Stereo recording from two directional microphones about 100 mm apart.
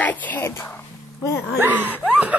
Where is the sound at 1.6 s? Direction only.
20° right (ahead or behind).